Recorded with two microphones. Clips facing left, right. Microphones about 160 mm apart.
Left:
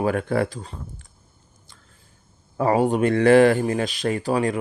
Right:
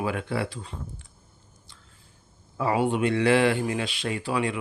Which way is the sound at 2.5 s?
45° left (ahead or behind).